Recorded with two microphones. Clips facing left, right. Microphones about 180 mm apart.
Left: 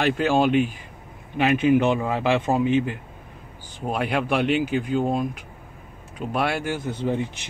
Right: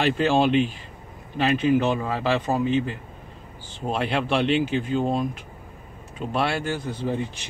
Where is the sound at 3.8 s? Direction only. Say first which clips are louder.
Even; 10° left (ahead or behind).